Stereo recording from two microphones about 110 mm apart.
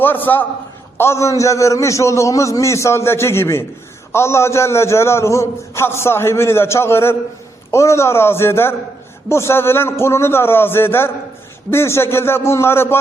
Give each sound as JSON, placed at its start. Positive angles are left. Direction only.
{"t": 0.0, "sound": "a man's voice", "side_deg": 15}